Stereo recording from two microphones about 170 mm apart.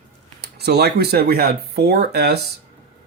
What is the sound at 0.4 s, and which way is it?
Speech, 75° right (ahead or behind).